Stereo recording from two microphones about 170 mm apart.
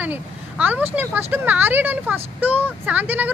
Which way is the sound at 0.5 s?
10° right (ahead or behind).